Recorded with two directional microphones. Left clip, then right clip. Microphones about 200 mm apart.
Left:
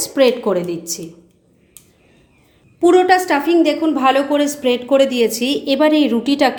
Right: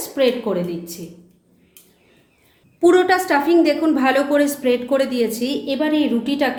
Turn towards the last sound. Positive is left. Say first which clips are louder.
# left 5 dB
turn(degrees=35)  # may be behind; listen again after turning